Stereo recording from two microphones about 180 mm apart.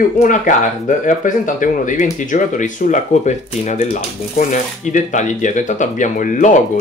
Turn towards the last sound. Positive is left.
turn(degrees=45)  # may be behind; listen again after turning